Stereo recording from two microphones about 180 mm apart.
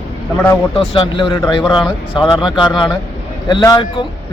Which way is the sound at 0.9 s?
30° left (ahead or behind).